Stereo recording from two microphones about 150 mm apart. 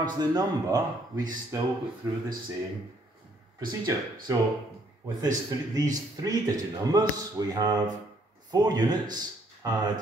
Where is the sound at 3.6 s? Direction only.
30° right (ahead or behind).